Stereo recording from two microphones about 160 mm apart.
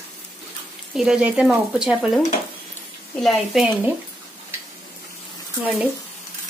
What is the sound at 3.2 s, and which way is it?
Speech, centre (ahead or behind).